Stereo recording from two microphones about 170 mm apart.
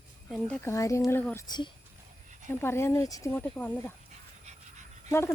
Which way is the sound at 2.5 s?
15° left (ahead or behind).